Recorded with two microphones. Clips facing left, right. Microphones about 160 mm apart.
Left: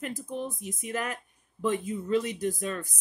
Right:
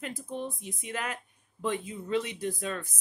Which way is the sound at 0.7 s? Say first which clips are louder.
Left 3 dB; 45° left (ahead or behind).